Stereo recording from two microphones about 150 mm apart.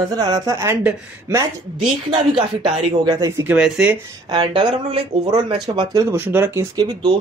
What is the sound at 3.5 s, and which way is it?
Speech, 5° right (ahead or behind).